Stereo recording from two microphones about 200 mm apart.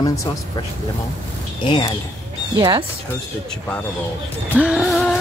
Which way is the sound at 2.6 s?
20° right (ahead or behind).